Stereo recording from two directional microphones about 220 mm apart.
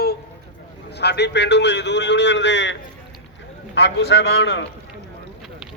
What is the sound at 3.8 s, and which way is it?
Speech, 55° left (ahead or behind).